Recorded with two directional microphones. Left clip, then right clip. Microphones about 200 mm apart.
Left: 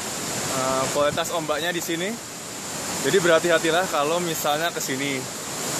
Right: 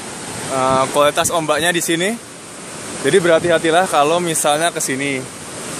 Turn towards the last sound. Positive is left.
turn(degrees=-40)  # may be behind; listen again after turning